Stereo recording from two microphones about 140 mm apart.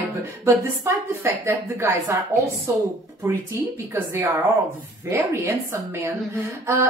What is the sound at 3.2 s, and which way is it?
Speech, 15° right (ahead or behind).